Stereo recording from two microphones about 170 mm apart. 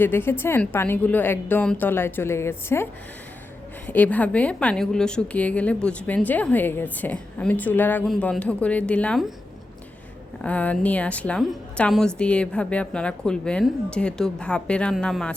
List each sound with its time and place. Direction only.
0.0 s a woman's voice: 15° left (ahead or behind)
10.4 s a woman's voice: 10° left (ahead or behind)